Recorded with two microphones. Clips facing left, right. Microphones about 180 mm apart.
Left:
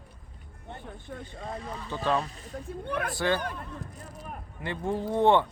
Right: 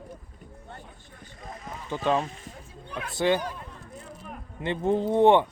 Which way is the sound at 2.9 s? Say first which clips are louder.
Left 5 dB; 55° left (ahead or behind).